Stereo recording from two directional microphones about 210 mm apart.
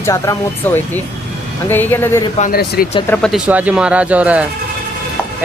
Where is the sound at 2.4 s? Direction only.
45° left (ahead or behind).